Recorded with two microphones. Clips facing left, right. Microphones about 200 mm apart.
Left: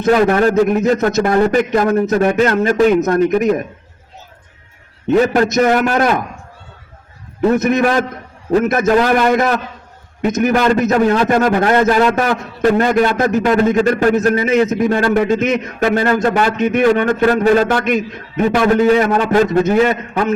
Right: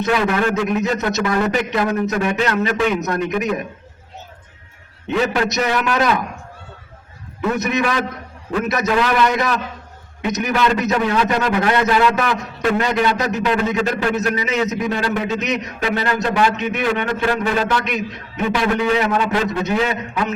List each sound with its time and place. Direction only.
0.0 s a man's voice: 45° left (ahead or behind)
5.0 s a man's voice: 45° left (ahead or behind)
7.5 s a man's voice: 50° left (ahead or behind)